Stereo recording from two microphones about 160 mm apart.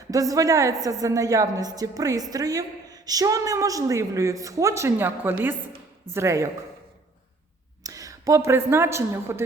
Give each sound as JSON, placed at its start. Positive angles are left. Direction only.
{"t": 0.1, "sound": "a woman's voice", "side_deg": -20}
{"t": 7.9, "sound": "speech", "side_deg": -20}